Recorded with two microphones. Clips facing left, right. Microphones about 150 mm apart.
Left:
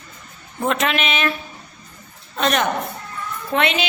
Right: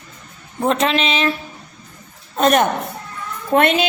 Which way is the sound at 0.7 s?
30° right (ahead or behind).